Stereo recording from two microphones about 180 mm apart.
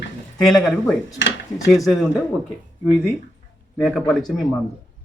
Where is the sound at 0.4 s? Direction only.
Centre (ahead or behind).